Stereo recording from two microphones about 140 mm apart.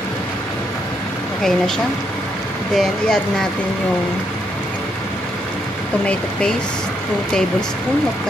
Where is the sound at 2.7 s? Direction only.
5° left (ahead or behind).